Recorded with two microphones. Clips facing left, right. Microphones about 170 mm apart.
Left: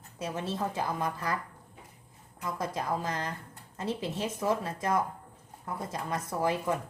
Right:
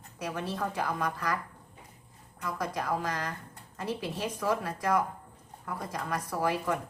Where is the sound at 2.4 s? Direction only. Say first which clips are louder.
Even; 25° left (ahead or behind).